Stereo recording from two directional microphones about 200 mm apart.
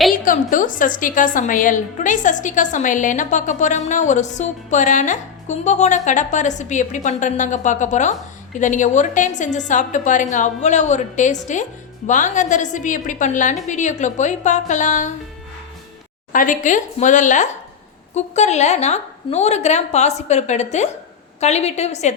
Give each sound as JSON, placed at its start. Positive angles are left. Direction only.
{"t": 0.5, "sound": "a woman's voice", "side_deg": 40}
{"t": 16.3, "sound": "a woman's voice", "side_deg": 40}